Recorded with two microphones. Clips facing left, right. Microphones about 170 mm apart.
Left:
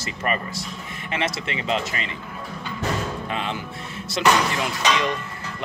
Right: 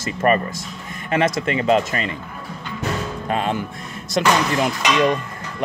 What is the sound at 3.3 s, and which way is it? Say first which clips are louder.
Speech: right 6 dB; 45° right (ahead or behind).